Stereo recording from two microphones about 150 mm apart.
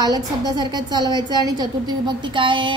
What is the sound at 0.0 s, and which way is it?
A woman's voice, 25° right (ahead or behind).